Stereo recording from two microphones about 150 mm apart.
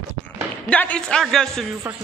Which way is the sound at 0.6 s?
10° left (ahead or behind).